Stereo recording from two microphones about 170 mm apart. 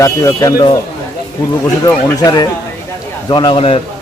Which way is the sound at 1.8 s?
20° left (ahead or behind).